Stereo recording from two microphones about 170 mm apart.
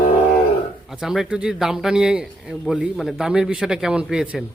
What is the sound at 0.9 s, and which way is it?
A man's voice, centre (ahead or behind).